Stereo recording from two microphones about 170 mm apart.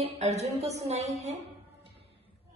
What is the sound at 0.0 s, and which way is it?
Speech, 40° right (ahead or behind).